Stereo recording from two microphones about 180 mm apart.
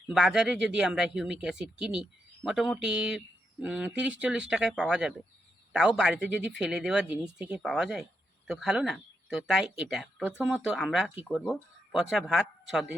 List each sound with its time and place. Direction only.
0.1 s speech: centre (ahead or behind)